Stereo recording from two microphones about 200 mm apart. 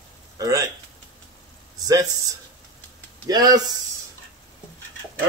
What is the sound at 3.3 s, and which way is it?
Speech, 20° right (ahead or behind).